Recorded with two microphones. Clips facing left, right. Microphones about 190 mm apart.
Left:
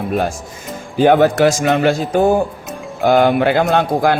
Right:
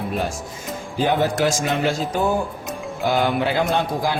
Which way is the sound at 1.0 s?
65° left (ahead or behind).